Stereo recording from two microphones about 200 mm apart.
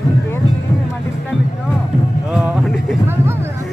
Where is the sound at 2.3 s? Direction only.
5° right (ahead or behind).